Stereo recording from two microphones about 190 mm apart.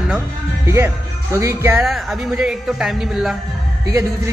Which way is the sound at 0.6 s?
15° right (ahead or behind).